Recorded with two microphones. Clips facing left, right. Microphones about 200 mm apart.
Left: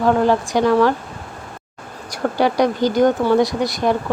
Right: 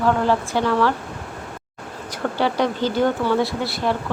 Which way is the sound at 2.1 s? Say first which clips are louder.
Left 4 dB; 15° left (ahead or behind).